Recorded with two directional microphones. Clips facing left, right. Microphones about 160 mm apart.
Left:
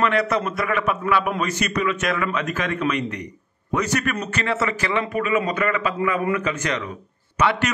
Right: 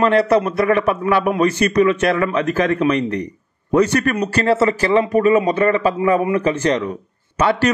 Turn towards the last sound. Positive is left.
turn(degrees=-35)  # may be behind; listen again after turning